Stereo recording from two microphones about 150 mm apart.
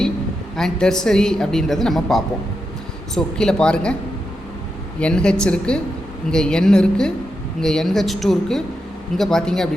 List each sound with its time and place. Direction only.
0.5 s a woman's voice: 5° left (ahead or behind)
4.9 s a woman's voice: 5° left (ahead or behind)